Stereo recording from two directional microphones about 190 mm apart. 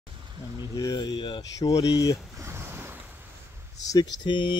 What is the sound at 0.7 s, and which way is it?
Speech, 20° left (ahead or behind).